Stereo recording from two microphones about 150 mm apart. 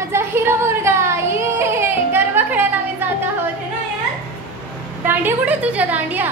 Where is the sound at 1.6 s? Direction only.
15° right (ahead or behind).